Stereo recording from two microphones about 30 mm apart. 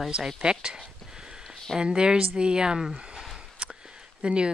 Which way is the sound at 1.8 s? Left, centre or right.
Right.